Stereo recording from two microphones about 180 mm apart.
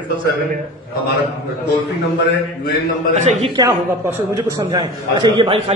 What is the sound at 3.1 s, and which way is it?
Speech, 40° right (ahead or behind).